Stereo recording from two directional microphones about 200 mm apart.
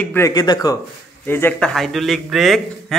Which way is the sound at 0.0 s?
10° left (ahead or behind).